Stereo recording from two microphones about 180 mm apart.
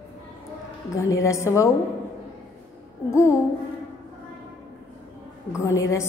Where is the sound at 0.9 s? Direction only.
15° left (ahead or behind).